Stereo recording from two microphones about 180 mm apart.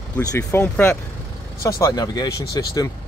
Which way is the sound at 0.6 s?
10° left (ahead or behind).